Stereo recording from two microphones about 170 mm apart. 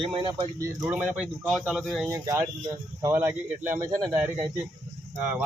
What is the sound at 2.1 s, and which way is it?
Speech, 20° right (ahead or behind).